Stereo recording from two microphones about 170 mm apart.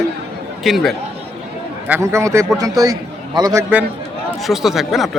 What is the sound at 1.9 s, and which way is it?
A man's voice, 15° right (ahead or behind).